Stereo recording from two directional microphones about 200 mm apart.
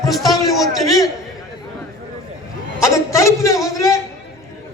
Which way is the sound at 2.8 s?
15° left (ahead or behind).